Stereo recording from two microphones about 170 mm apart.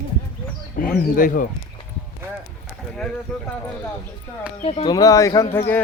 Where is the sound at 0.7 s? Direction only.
55° left (ahead or behind).